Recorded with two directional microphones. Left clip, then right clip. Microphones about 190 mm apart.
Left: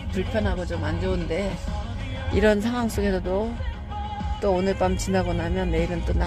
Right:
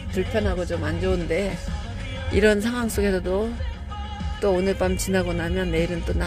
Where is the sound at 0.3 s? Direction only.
20° right (ahead or behind).